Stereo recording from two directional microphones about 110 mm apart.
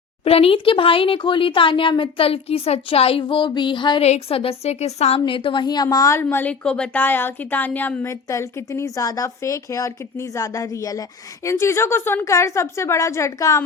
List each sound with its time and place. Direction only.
0.3 s speech: 60° left (ahead or behind); by 4.0 s 45° left (ahead or behind)
4.0 s a woman's voice: 70° left (ahead or behind)
5.2 s a woman's voice: 50° left (ahead or behind); by 6.2 s 30° left (ahead or behind)
6.3 s speech: 10° left (ahead or behind)
8.1 s speech: 25° left (ahead or behind)